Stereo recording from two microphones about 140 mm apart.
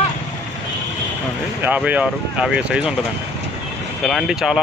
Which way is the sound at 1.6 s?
10° right (ahead or behind).